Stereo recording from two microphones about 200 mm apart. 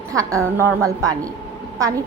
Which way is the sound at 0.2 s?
15° right (ahead or behind).